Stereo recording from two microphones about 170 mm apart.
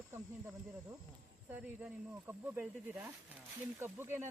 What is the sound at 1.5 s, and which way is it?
Speech, 10° right (ahead or behind).